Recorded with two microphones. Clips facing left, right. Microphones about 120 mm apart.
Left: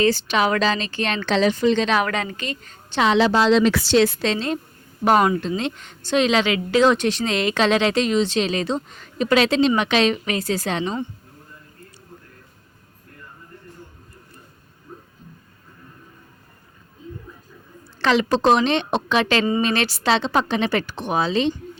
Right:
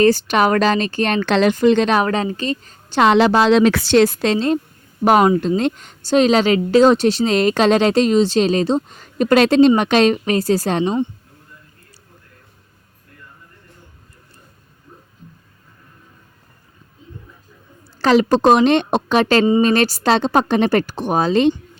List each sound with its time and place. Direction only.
0.0 s speech: 45° right (ahead or behind)
2.0 s a woman's voice: 35° right (ahead or behind)
3.0 s a woman's voice: 55° right (ahead or behind); by 10.9 s 40° right (ahead or behind)
18.0 s speech: 40° right (ahead or behind)